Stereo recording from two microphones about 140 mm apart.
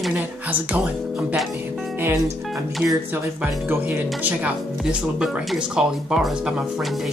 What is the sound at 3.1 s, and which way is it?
Speech, 15° right (ahead or behind).